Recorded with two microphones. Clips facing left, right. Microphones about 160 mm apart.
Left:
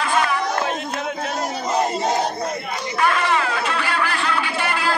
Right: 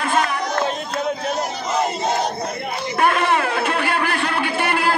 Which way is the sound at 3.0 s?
55° right (ahead or behind).